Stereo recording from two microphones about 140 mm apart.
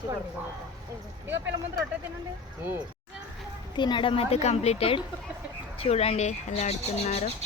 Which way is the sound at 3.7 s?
35° left (ahead or behind).